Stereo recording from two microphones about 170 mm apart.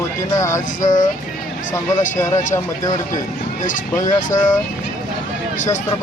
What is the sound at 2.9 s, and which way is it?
Speech, 50° left (ahead or behind).